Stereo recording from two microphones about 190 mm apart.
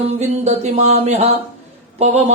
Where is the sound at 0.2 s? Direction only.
35° right (ahead or behind).